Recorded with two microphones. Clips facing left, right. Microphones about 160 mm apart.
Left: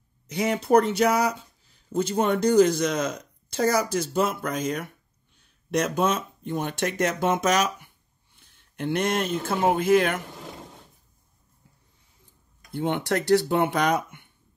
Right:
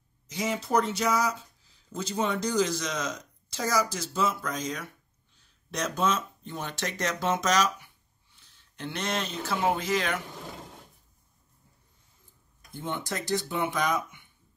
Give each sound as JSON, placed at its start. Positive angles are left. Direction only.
{"t": 0.3, "sound": "speech", "side_deg": 60}
{"t": 12.7, "sound": "speech", "side_deg": 65}